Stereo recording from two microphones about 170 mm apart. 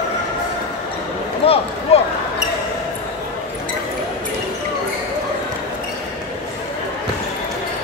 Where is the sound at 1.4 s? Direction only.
35° left (ahead or behind).